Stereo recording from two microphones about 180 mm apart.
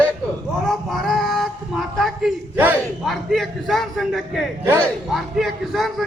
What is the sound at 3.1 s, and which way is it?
A man's voice, centre (ahead or behind).